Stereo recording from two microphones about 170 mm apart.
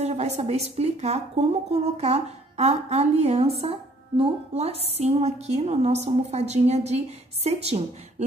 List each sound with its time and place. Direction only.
0.0 s speech: 40° right (ahead or behind)